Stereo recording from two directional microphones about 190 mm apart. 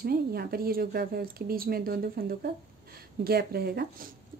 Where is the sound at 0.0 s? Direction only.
55° right (ahead or behind).